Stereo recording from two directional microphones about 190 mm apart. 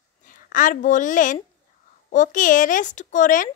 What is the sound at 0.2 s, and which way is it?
A woman's voice, 45° left (ahead or behind).